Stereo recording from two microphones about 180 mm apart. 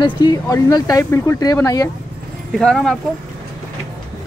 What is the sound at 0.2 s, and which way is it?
Speech, 20° left (ahead or behind).